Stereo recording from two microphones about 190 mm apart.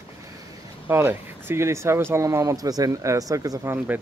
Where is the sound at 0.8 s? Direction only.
10° right (ahead or behind).